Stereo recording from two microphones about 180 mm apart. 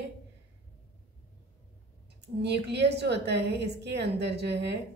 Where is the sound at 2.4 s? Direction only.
70° right (ahead or behind).